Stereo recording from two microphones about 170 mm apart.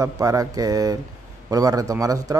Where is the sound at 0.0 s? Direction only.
20° right (ahead or behind).